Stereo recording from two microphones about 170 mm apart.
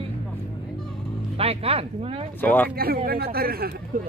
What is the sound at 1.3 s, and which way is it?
Speech, 35° right (ahead or behind).